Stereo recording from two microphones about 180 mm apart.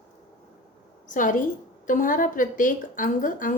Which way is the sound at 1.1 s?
45° left (ahead or behind).